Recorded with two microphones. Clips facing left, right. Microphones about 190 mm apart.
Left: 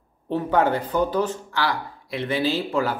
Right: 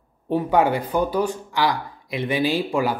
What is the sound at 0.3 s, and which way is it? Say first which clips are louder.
Speech: right 2 dB; 10° right (ahead or behind).